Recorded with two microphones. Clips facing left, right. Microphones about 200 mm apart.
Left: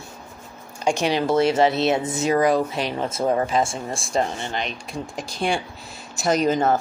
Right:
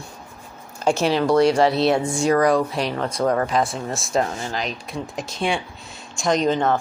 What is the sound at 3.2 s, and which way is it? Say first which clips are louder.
Speech: right 1 dB; 25° left (ahead or behind).